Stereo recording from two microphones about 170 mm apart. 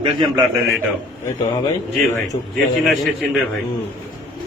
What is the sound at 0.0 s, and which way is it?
Speech, 25° right (ahead or behind).